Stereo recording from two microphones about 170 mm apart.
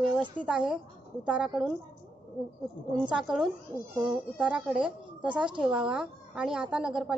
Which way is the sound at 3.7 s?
20° left (ahead or behind).